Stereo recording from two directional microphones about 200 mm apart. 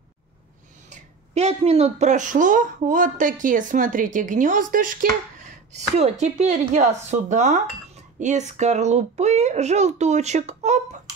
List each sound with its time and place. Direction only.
0.8 s speech: 30° right (ahead or behind)
5.9 s speech: 35° right (ahead or behind)